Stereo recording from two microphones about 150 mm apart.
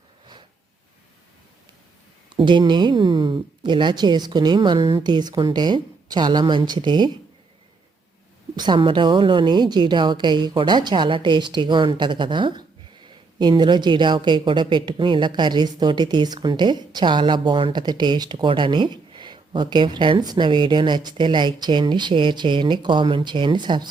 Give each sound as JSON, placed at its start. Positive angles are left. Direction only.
{"t": 2.3, "sound": "speech", "side_deg": -30}
{"t": 8.5, "sound": "a woman's voice", "side_deg": -30}